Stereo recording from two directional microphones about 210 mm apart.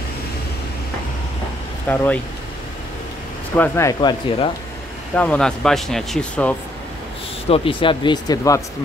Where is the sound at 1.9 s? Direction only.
10° left (ahead or behind).